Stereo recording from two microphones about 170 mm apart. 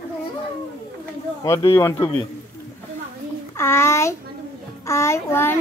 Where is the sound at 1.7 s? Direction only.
15° left (ahead or behind).